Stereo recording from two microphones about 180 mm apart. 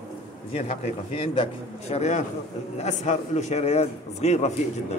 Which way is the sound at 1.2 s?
30° left (ahead or behind).